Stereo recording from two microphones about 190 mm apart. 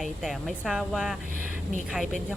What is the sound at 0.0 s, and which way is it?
Speech, centre (ahead or behind).